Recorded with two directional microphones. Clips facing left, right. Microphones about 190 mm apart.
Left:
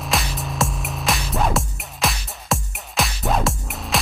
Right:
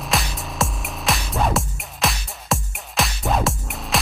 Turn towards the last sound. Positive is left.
turn(degrees=0)  # may be behind; listen again after turning